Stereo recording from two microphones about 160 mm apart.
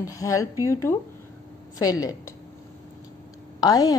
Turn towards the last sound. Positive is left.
turn(degrees=25)  # may be behind; listen again after turning